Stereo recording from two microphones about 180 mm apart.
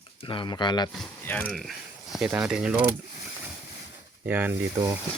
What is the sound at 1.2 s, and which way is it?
Speech, 10° left (ahead or behind).